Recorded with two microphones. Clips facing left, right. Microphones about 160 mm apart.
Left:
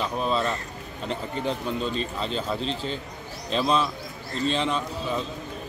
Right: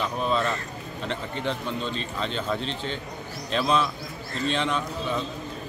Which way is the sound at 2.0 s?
35° left (ahead or behind).